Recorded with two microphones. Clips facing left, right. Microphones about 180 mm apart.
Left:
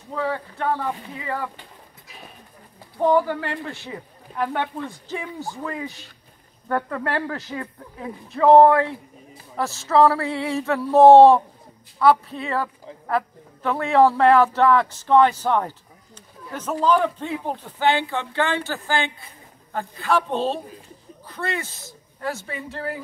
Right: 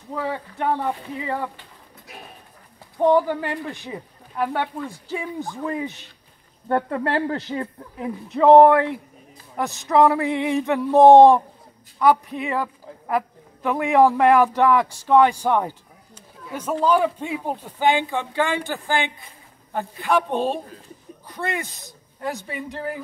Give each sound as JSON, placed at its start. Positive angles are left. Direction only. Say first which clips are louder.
{"t": 0.1, "sound": "speech", "louder": "left 1 dB", "side_deg": -15}
{"t": 3.0, "sound": "a man's voice", "louder": "right 1 dB", "side_deg": -15}
{"t": 5.6, "sound": "a man's voice", "louder": "right 3 dB", "side_deg": -20}